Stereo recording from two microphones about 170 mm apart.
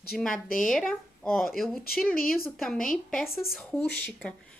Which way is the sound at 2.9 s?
5° left (ahead or behind).